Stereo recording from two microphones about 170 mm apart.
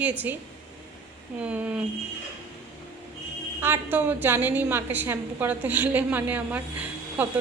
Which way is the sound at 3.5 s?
15° right (ahead or behind).